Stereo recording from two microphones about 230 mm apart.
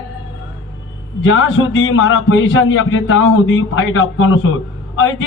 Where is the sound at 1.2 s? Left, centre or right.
Left.